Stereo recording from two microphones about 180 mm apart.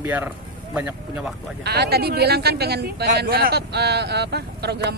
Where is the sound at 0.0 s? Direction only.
10° right (ahead or behind).